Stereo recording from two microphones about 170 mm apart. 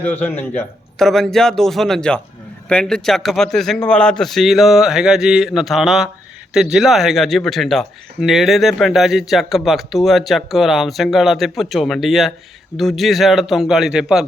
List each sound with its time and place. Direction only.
0.0 s speech: 10° left (ahead or behind)